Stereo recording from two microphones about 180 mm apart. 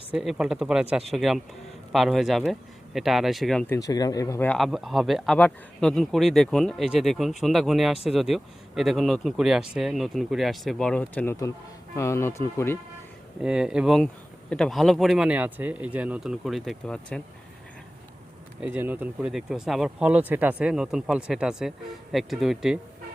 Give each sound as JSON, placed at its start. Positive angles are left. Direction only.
{"t": 0.1, "sound": "speech", "side_deg": -5}
{"t": 3.7, "sound": "speech", "side_deg": 20}
{"t": 4.5, "sound": "speech", "side_deg": 0}
{"t": 13.4, "sound": "speech", "side_deg": -5}
{"t": 18.6, "sound": "speech", "side_deg": -10}